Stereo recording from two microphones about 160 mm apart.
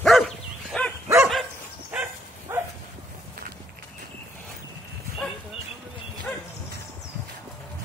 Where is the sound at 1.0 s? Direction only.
15° right (ahead or behind).